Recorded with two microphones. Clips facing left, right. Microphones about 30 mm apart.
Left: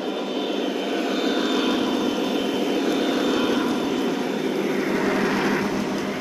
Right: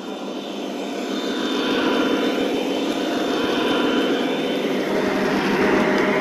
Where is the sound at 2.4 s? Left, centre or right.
Centre.